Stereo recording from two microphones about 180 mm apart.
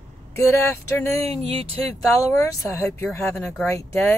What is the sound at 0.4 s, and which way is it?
Speech, 15° left (ahead or behind).